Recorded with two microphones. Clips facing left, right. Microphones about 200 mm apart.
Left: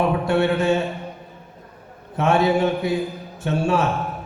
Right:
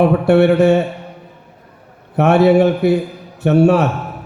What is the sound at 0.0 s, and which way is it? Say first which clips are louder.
Speech: right 8 dB; 65° right (ahead or behind).